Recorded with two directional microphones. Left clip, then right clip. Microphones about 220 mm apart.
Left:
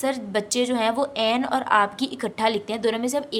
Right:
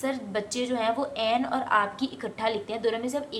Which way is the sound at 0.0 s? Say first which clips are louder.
Left 5 dB; 50° left (ahead or behind).